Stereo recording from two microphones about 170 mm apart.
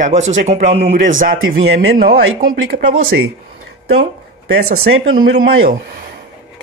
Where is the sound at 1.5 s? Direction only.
70° right (ahead or behind).